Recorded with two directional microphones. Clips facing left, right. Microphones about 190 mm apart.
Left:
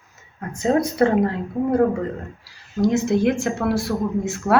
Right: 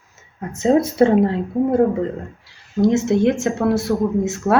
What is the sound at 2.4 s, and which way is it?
Speech, 25° right (ahead or behind).